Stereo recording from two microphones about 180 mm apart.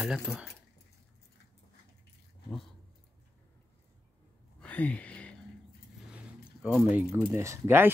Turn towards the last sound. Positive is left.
turn(degrees=-10)  # may be behind; listen again after turning